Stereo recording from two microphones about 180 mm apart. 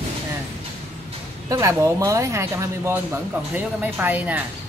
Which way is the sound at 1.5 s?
15° right (ahead or behind).